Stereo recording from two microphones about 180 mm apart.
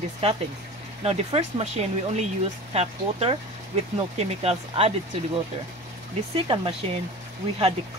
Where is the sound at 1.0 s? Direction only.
35° right (ahead or behind).